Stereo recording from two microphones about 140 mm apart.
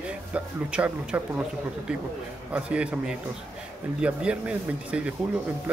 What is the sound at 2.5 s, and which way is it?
A man's voice, 10° right (ahead or behind).